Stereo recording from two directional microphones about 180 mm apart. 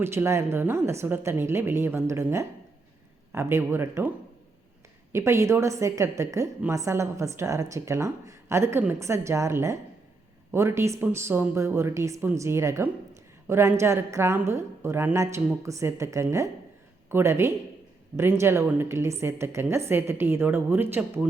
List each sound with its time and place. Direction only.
0.0 s a woman's voice: 15° right (ahead or behind)
5.1 s a woman's voice: 15° right (ahead or behind)